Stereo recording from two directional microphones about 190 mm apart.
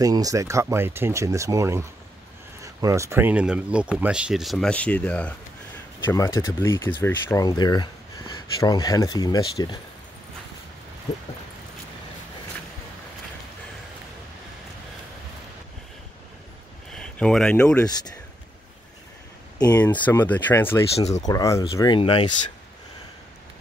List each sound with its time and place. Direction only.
0.0 s speech: 20° right (ahead or behind); by 9.8 s 20° left (ahead or behind)
16.9 s speech: 5° left (ahead or behind)
19.8 s speech: 10° left (ahead or behind)
20.9 s speech: 35° left (ahead or behind)
21.2 s speech: 20° left (ahead or behind)